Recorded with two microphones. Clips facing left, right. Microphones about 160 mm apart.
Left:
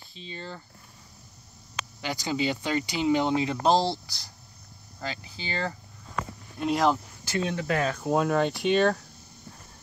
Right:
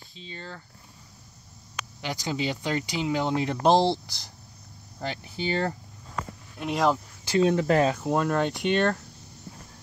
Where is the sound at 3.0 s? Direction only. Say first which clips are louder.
Left 3 dB; 20° left (ahead or behind).